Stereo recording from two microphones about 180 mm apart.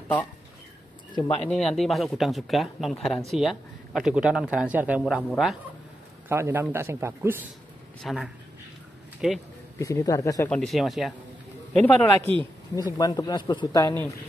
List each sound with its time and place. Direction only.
1.1 s speech: 25° left (ahead or behind)
1.4 s speech: 5° left (ahead or behind)
6.2 s a man's voice: 15° right (ahead or behind)
8.0 s speech: centre (ahead or behind)
9.8 s speech: 15° left (ahead or behind)
10.5 s speech: centre (ahead or behind)
12.7 s speech: 20° left (ahead or behind)